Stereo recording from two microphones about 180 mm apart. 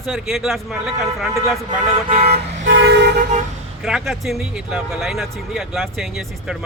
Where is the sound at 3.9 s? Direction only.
Centre (ahead or behind).